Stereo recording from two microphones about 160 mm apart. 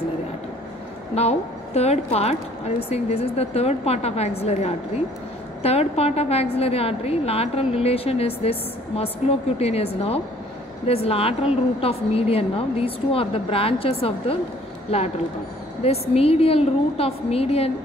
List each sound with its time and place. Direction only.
1.1 s a woman's voice: 40° left (ahead or behind)
15.8 s a woman's voice: 40° left (ahead or behind)